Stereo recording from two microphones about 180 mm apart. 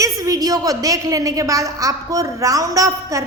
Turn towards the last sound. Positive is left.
turn(degrees=-20)  # may be behind; listen again after turning